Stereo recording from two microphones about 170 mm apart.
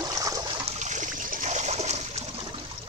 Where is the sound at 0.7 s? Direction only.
45° right (ahead or behind).